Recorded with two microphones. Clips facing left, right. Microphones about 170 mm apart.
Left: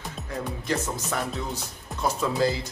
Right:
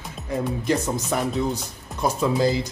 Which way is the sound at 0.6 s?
15° right (ahead or behind).